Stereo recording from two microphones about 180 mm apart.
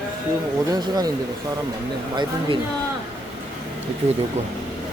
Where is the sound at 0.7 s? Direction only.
20° right (ahead or behind).